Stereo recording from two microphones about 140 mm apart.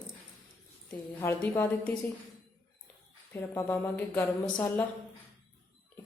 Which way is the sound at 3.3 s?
15° left (ahead or behind).